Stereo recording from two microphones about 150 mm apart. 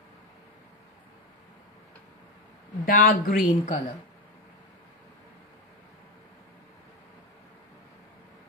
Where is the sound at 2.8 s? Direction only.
70° left (ahead or behind).